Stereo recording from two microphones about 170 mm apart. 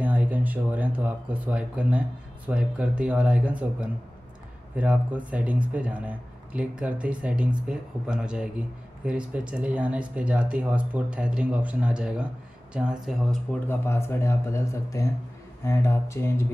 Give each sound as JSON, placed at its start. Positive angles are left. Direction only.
{"t": 0.0, "sound": "speech", "side_deg": -10}
{"t": 13.7, "sound": "speech", "side_deg": 15}